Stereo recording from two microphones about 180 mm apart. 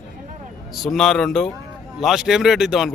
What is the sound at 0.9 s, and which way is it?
Speech, centre (ahead or behind).